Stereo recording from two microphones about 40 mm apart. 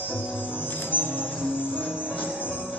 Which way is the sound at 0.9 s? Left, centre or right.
Right.